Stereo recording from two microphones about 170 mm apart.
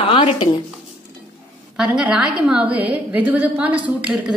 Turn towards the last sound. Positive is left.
turn(degrees=-5)  # may be behind; listen again after turning